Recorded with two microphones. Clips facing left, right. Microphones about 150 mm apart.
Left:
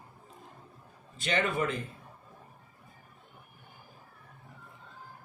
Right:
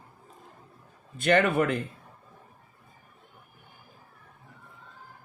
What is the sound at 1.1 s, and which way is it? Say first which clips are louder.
Speech: right 7 dB; 60° right (ahead or behind).